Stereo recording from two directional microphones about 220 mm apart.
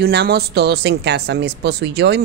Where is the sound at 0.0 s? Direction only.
45° right (ahead or behind).